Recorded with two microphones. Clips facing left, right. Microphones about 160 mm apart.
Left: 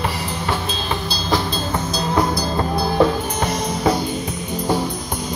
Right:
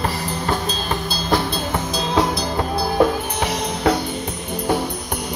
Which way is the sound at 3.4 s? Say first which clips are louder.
Left 1 dB; 70° right (ahead or behind).